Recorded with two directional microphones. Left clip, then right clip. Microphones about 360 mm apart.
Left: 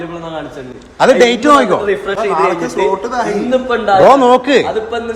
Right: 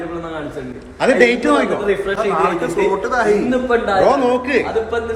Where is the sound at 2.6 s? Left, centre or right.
Centre.